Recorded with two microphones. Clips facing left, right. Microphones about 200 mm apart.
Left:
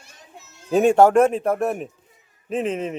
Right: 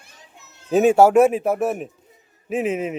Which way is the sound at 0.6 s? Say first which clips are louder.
Right 1 dB; 5° right (ahead or behind).